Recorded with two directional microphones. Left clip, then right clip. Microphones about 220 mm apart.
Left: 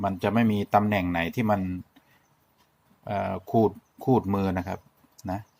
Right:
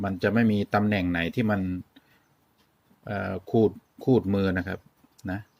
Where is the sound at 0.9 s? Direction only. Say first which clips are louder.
Left 1 dB; 5° right (ahead or behind).